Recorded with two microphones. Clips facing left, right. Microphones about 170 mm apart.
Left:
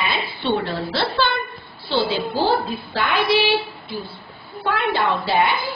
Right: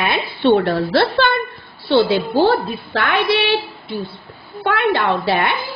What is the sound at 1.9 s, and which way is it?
A woman's voice, 60° right (ahead or behind).